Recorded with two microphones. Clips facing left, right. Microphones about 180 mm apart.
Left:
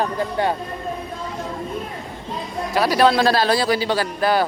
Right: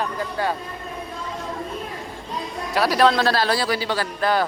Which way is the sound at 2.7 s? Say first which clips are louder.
Left 1 dB; centre (ahead or behind).